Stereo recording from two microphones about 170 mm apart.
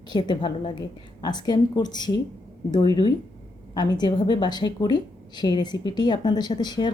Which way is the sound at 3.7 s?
25° left (ahead or behind).